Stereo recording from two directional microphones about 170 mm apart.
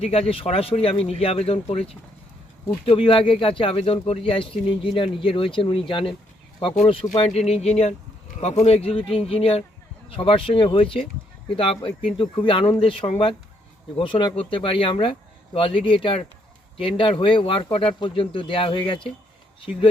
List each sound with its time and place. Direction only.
0.0 s speech: 35° left (ahead or behind)
6.7 s speech: 35° left (ahead or behind)